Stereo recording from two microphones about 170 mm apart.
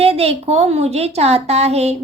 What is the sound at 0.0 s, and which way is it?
A woman's voice, 35° right (ahead or behind).